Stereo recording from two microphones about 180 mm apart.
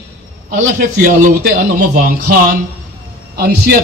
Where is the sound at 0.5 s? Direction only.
50° right (ahead or behind).